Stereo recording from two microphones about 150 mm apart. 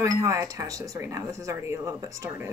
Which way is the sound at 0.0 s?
20° right (ahead or behind).